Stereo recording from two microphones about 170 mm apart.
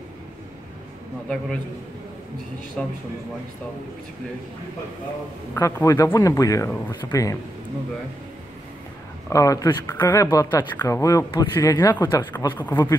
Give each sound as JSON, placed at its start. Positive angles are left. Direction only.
{"t": 2.8, "sound": "a man's voice", "side_deg": 0}
{"t": 5.5, "sound": "speech", "side_deg": 15}
{"t": 9.3, "sound": "a man's voice", "side_deg": 20}